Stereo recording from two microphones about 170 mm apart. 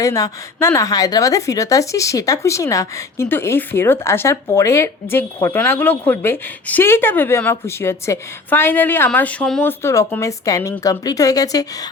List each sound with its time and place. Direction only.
0.0 s a woman's voice: 20° left (ahead or behind)